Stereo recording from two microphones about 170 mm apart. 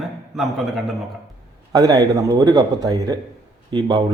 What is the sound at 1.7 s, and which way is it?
Speech, 25° right (ahead or behind).